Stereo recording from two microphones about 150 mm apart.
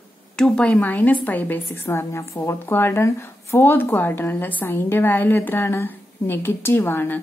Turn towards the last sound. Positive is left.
turn(degrees=15)  # may be behind; listen again after turning